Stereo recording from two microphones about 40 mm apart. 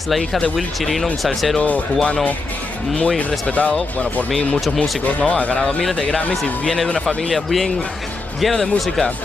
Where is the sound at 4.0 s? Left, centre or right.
Left.